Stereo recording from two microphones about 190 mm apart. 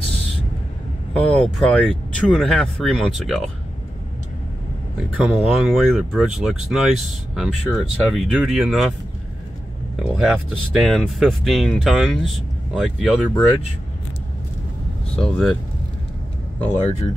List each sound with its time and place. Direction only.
1.1 s speech: 5° left (ahead or behind)
5.1 s speech: centre (ahead or behind)
10.0 s speech: 5° right (ahead or behind)
15.1 s speech: 5° left (ahead or behind)